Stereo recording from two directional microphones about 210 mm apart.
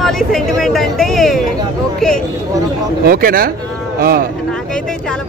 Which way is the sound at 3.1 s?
45° right (ahead or behind).